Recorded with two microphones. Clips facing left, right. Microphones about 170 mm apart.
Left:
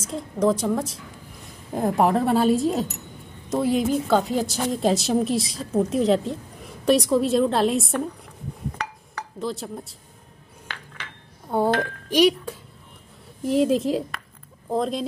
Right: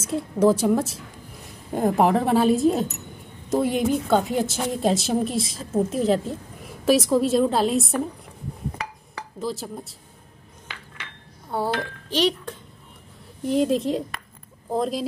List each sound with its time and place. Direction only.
0.0 s a woman's voice: 5° right (ahead or behind)
9.4 s a woman's voice: centre (ahead or behind)
11.5 s chink: 20° left (ahead or behind)
12.1 s a woman's voice: 10° left (ahead or behind)